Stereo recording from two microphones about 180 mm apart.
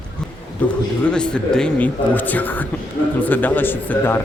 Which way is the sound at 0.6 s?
5° left (ahead or behind).